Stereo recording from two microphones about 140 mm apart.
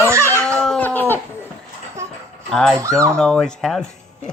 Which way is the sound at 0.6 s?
10° left (ahead or behind).